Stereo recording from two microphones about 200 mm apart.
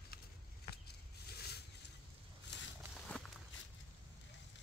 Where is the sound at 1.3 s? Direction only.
55° left (ahead or behind).